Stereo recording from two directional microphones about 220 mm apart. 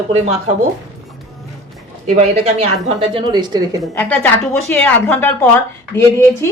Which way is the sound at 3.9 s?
10° left (ahead or behind).